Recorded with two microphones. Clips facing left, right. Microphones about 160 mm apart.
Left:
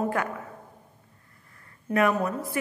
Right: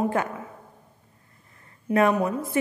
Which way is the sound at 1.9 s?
10° right (ahead or behind).